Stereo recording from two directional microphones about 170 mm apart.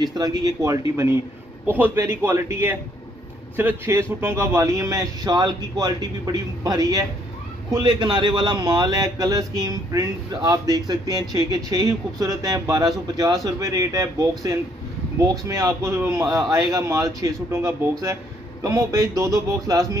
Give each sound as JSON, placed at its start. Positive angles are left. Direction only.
{"t": 0.0, "sound": "a man's voice", "side_deg": -25}